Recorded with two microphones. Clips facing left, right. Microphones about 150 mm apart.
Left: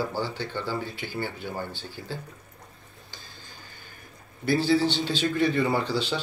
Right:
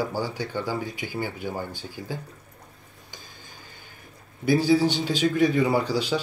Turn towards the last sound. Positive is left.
turn(degrees=-10)  # may be behind; listen again after turning